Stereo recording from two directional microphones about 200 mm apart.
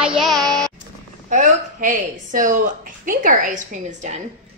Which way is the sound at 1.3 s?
40° right (ahead or behind).